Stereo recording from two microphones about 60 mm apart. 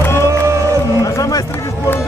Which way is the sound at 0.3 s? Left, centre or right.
Right.